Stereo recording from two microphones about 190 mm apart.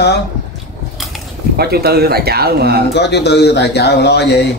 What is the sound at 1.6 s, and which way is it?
Speech, 55° right (ahead or behind).